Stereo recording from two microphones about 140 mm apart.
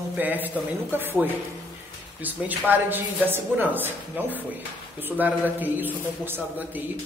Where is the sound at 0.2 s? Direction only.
10° right (ahead or behind).